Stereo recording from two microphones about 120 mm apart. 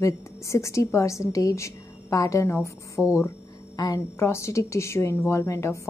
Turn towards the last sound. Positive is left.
turn(degrees=25)  # may be behind; listen again after turning